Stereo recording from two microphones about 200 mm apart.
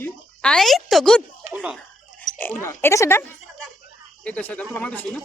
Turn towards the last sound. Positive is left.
turn(degrees=5)  # may be behind; listen again after turning